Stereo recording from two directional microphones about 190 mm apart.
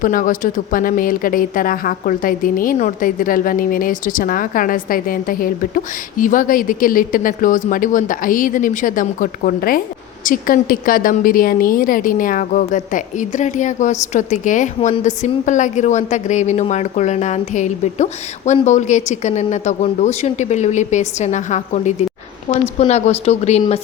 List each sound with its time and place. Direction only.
0.0 s a woman's voice: 45° left (ahead or behind)